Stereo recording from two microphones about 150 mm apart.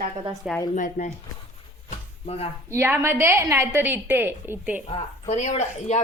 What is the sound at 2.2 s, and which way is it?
Speech, 40° left (ahead or behind).